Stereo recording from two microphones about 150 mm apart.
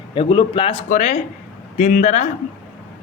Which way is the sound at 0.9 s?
50° left (ahead or behind).